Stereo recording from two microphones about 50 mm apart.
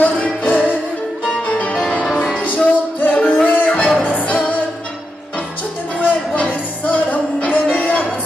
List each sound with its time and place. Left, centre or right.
0.5 s music: left
1.2 s music: left
2.4 s music: left
6.4 s music: left